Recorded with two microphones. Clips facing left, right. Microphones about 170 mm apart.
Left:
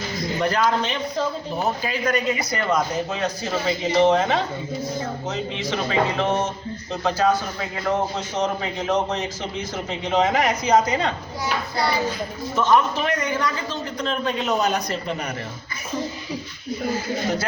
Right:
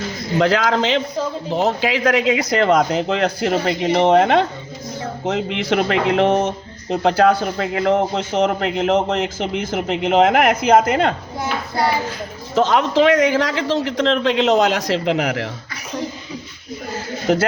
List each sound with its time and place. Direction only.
0.3 s a man's voice: 90° right
7.0 s a man's voice: 65° right (ahead or behind)
9.1 s a man's voice: 90° right
9.9 s speech: 65° right (ahead or behind)
12.5 s a man's voice: 90° right